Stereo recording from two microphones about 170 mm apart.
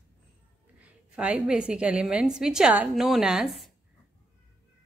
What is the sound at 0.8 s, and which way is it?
A woman's voice, 10° right (ahead or behind).